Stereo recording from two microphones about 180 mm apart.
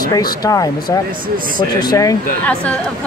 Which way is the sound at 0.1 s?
20° left (ahead or behind).